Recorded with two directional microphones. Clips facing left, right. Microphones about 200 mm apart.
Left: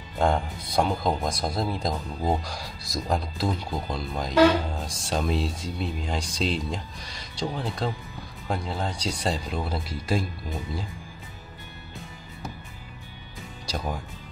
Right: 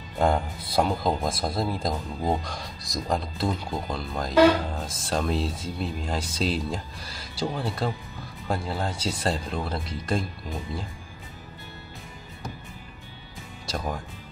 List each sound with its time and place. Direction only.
0.2 s speech: 5° right (ahead or behind)
13.7 s speech: centre (ahead or behind)